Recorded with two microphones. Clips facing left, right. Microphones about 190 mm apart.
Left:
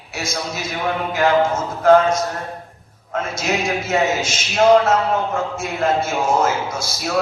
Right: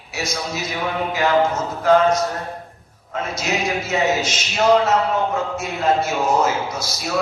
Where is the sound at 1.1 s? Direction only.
50° left (ahead or behind).